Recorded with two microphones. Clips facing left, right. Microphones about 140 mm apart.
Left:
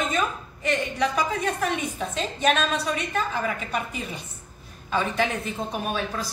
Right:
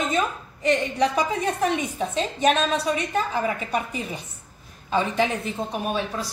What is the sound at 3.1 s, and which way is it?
Speech, 20° right (ahead or behind).